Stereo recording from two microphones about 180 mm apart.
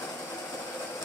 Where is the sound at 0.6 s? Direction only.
10° left (ahead or behind).